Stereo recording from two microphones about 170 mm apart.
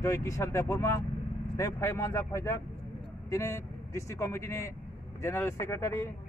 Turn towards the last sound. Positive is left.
turn(degrees=15)  # may be behind; listen again after turning